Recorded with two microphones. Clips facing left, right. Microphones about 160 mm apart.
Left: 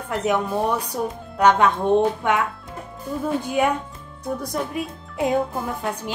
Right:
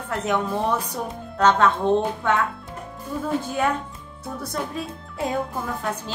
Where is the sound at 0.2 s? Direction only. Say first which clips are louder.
Left 2 dB; 10° left (ahead or behind).